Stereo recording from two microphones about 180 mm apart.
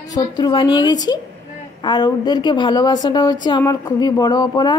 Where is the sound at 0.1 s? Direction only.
25° left (ahead or behind).